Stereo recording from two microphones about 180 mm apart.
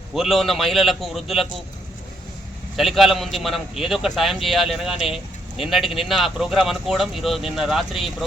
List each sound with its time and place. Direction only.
0.1 s a man's voice: centre (ahead or behind)
2.7 s a man's voice: centre (ahead or behind)